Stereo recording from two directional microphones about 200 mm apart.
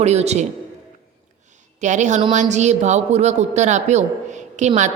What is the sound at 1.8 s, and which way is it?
A woman's voice, 35° right (ahead or behind).